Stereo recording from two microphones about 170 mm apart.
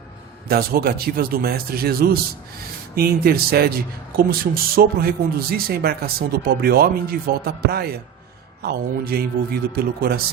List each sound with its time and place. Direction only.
0.4 s speech: 65° right (ahead or behind)